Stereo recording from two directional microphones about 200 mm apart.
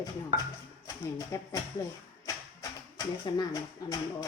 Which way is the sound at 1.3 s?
15° left (ahead or behind).